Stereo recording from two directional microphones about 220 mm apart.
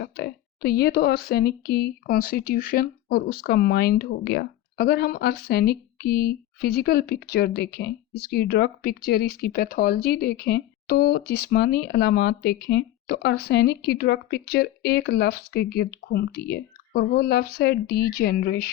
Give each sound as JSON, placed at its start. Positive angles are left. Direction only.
{"t": 0.0, "sound": "speech", "side_deg": 50}